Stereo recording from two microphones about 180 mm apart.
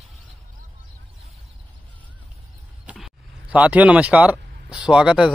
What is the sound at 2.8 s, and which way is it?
Speech, 5° right (ahead or behind).